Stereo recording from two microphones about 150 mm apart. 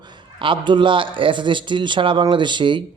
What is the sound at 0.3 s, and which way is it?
Speech, 35° right (ahead or behind).